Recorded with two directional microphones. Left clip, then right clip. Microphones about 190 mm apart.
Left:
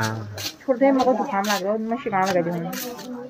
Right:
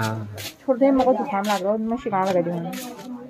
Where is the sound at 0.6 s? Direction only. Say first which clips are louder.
Even; 20° right (ahead or behind).